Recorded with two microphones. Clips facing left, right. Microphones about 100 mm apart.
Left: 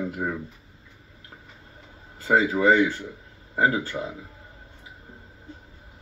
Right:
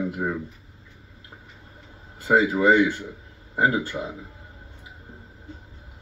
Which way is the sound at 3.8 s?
15° right (ahead or behind).